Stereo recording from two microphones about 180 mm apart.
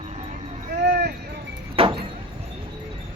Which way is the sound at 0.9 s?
60° right (ahead or behind).